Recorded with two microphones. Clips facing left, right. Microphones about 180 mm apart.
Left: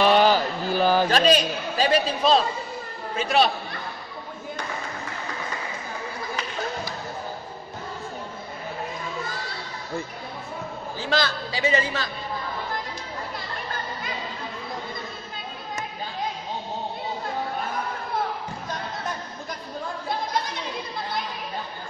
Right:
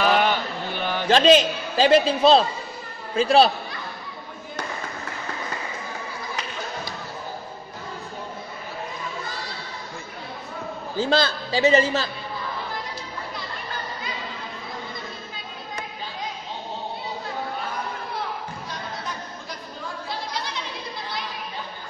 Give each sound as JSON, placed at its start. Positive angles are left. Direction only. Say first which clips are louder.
{"t": 0.1, "sound": "mantra", "louder": "left 3 dB", "side_deg": 35}
{"t": 1.1, "sound": "a man's voice", "louder": "right 4 dB", "side_deg": -25}
{"t": 3.2, "sound": "speech", "louder": "right 5 dB", "side_deg": -30}
{"t": 11.0, "sound": "a man's voice", "louder": "right 4 dB", "side_deg": -30}
{"t": 20.1, "sound": "a sound", "louder": "left 5 dB", "side_deg": 50}